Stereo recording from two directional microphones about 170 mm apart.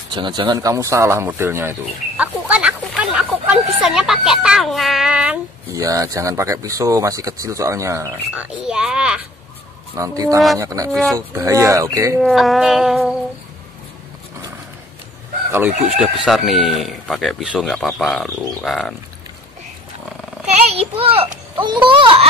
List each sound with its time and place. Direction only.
0.1 s speech: 25° right (ahead or behind); by 5.4 s 5° right (ahead or behind)
5.8 s speech: 20° right (ahead or behind)
8.6 s speech: 5° right (ahead or behind)
9.9 s speech: 20° right (ahead or behind)
10.9 s speech: 5° left (ahead or behind)
11.1 s speech: 20° right (ahead or behind)
12.2 s speech: centre (ahead or behind)
16.0 s speech: centre (ahead or behind)
20.4 s a child's voice: 35° right (ahead or behind)